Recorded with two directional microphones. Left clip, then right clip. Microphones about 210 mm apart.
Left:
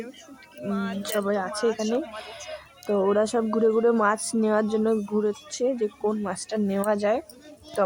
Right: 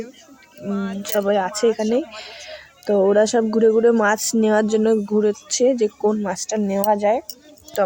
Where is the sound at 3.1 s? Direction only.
20° right (ahead or behind).